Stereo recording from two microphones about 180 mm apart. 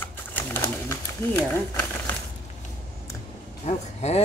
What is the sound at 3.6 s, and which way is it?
Speech, 35° left (ahead or behind).